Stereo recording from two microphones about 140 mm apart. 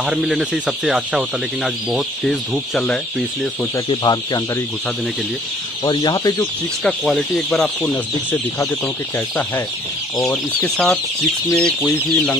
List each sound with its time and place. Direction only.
0.0 s speech: centre (ahead or behind)
3.9 s speech: 30° left (ahead or behind)
5.9 s speech: 30° left (ahead or behind)
6.8 s speech: 5° left (ahead or behind)
10.6 s speech: 5° left (ahead or behind)